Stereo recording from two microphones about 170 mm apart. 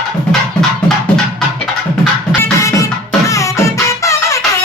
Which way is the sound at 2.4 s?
20° left (ahead or behind).